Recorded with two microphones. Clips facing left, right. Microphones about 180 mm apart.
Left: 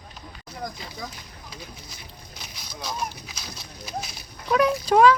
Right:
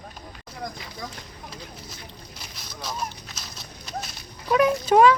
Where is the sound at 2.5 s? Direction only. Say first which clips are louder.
Left 1 dB; centre (ahead or behind).